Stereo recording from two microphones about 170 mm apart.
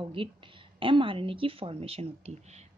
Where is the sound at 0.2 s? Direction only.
30° right (ahead or behind).